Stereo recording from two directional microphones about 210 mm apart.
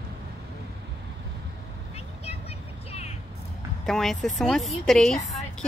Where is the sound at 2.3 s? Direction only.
30° left (ahead or behind).